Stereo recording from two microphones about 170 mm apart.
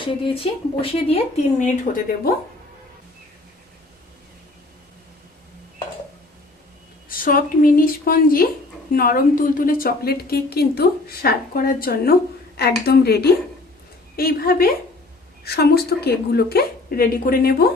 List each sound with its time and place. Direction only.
0.0 s speech: 30° left (ahead or behind); by 2.3 s 50° left (ahead or behind)
7.1 s a woman's voice: 55° left (ahead or behind)